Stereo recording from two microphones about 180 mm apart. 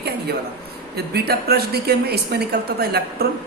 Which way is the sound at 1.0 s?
60° right (ahead or behind).